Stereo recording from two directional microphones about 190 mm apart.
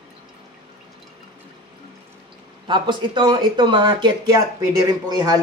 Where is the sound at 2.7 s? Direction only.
25° right (ahead or behind).